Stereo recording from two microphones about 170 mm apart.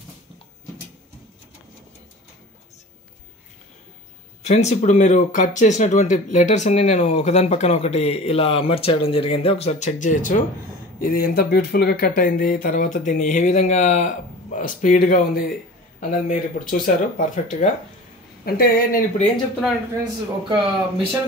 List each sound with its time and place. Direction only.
4.4 s speech: 40° left (ahead or behind)
20.4 s speech: 30° right (ahead or behind)